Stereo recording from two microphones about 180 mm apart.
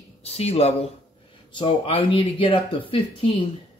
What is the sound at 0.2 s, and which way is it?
Speech, 35° left (ahead or behind).